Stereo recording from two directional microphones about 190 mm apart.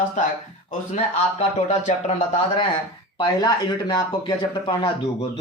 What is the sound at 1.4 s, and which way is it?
Speech, 35° left (ahead or behind).